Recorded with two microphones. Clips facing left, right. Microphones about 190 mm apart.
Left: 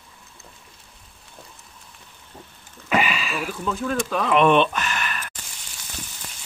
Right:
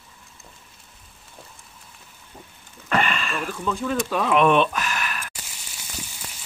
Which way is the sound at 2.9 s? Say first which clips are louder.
Left 1 dB; 5° left (ahead or behind).